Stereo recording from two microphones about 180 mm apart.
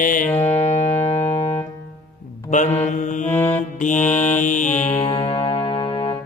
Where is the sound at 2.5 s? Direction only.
40° left (ahead or behind).